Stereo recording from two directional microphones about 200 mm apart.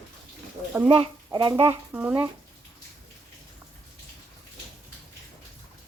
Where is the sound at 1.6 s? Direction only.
10° right (ahead or behind).